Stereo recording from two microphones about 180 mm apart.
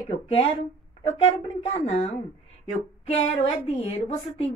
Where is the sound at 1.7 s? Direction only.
35° left (ahead or behind).